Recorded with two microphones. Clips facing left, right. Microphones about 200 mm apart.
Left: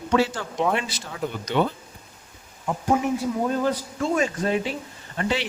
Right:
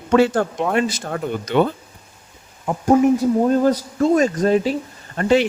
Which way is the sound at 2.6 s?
40° right (ahead or behind).